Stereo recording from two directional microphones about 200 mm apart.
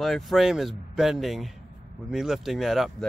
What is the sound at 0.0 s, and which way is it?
Speech, centre (ahead or behind).